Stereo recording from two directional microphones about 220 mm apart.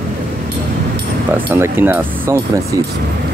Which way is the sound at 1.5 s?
10° right (ahead or behind).